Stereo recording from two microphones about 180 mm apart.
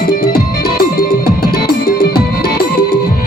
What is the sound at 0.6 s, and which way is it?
Music, 55° left (ahead or behind).